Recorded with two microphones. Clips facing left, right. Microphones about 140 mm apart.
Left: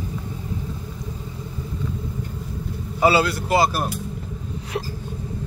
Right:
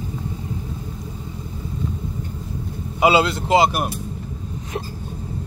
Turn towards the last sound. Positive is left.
turn(degrees=-20)  # may be behind; listen again after turning